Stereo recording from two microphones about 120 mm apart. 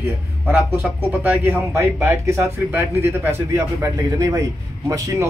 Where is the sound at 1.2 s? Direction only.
15° right (ahead or behind).